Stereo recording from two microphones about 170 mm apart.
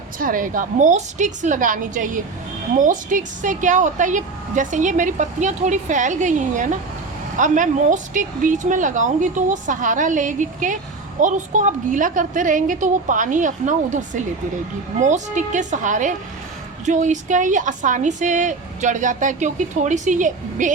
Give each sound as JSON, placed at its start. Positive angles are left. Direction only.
{"t": 0.2, "sound": "a woman's voice", "side_deg": -55}